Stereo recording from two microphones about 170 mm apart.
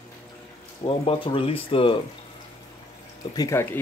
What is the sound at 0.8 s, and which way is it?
Speech, 30° left (ahead or behind).